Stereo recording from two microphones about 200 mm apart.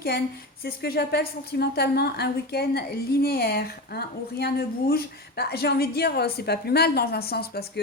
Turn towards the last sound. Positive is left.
turn(degrees=50)  # may be behind; listen again after turning